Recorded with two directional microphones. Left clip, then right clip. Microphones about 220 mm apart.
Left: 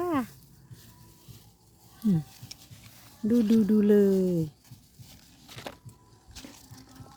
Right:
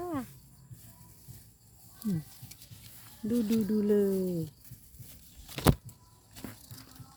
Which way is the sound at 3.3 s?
35° left (ahead or behind).